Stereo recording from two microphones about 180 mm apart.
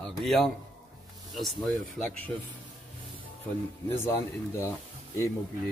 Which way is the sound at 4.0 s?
15° left (ahead or behind).